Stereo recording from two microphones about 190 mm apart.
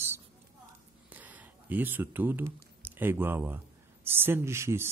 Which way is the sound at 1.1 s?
10° right (ahead or behind).